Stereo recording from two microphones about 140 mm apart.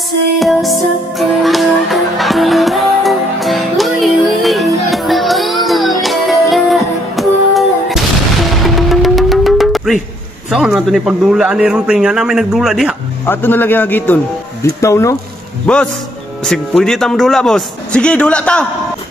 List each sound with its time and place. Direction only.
0.4 s music: centre (ahead or behind)
10.5 s a man's voice: 5° right (ahead or behind)
13.2 s speech: 15° left (ahead or behind)
15.6 s a man's voice: 5° left (ahead or behind)